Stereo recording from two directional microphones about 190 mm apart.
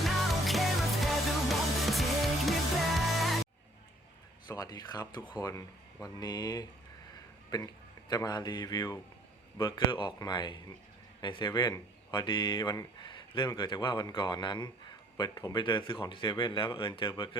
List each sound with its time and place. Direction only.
0.0 s music: centre (ahead or behind)
4.4 s speech: 20° left (ahead or behind)
8.1 s speech: 20° left (ahead or behind)